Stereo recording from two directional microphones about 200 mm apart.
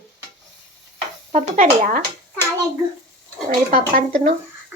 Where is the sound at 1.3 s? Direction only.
40° right (ahead or behind).